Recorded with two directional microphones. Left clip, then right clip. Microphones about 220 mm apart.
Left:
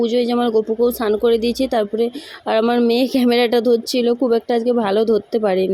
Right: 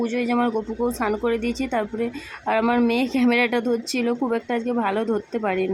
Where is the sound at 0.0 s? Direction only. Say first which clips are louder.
Left 6 dB; 15° left (ahead or behind).